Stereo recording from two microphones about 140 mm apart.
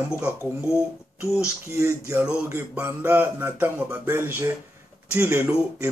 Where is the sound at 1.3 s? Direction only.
20° right (ahead or behind).